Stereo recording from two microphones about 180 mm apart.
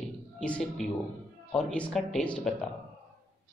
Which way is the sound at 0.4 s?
5° left (ahead or behind).